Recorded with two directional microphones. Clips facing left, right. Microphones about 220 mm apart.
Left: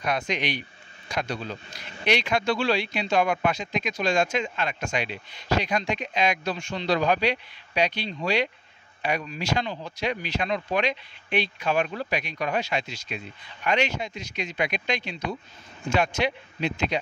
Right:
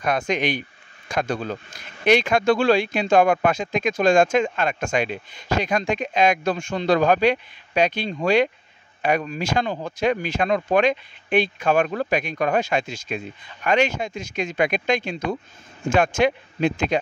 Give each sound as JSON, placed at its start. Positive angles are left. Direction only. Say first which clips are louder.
{"t": 0.0, "sound": "a man's voice", "louder": "right 5 dB", "side_deg": -50}